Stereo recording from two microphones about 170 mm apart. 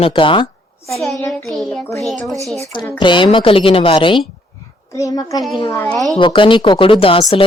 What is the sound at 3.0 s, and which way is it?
A woman's voice, 30° left (ahead or behind).